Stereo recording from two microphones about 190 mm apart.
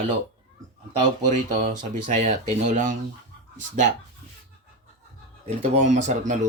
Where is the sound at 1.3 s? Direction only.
40° right (ahead or behind).